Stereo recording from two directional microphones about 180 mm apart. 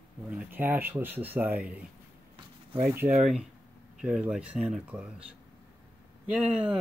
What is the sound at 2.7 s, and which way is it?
Speech, 10° right (ahead or behind).